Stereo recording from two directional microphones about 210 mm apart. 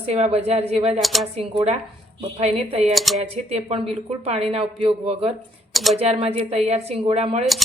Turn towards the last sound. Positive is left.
turn(degrees=-30)  # may be behind; listen again after turning